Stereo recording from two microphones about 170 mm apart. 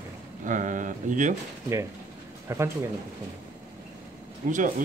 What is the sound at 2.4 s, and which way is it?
Speech, 15° right (ahead or behind).